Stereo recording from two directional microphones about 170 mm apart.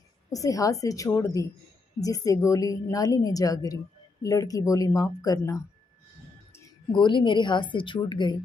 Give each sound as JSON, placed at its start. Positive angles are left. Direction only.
{"t": 0.3, "sound": "a woman's voice", "side_deg": 20}
{"t": 6.9, "sound": "a woman's voice", "side_deg": 30}